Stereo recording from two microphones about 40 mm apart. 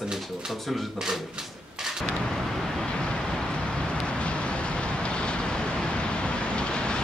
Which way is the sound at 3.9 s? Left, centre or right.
Left.